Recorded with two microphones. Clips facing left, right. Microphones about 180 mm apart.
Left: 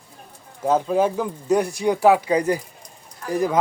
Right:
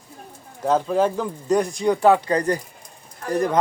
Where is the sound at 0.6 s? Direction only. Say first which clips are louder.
Even; 10° left (ahead or behind).